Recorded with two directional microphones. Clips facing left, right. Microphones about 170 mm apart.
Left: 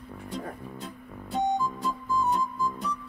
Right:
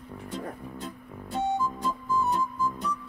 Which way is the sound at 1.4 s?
15° left (ahead or behind).